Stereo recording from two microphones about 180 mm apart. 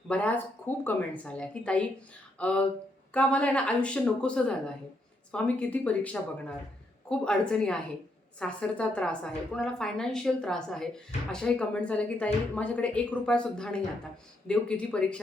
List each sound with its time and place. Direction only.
0.1 s a woman's voice: 10° left (ahead or behind)